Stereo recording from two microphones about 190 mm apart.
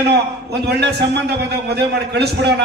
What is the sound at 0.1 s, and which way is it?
A man's voice, 60° right (ahead or behind).